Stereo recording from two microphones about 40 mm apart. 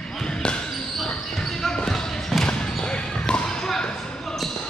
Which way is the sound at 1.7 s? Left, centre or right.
Centre.